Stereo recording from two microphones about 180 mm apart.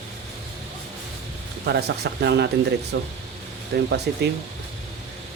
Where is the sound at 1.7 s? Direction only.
65° right (ahead or behind).